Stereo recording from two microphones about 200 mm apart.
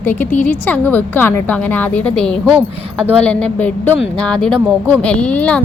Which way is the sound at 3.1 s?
5° left (ahead or behind).